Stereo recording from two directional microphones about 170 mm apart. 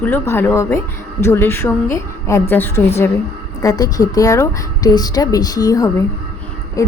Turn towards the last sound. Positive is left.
turn(degrees=20)  # may be behind; listen again after turning